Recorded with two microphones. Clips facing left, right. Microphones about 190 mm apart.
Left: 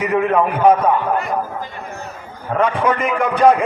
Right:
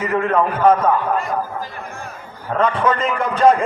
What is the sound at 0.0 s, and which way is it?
Speech, 15° left (ahead or behind).